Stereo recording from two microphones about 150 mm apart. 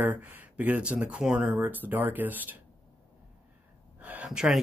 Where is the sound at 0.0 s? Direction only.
10° right (ahead or behind).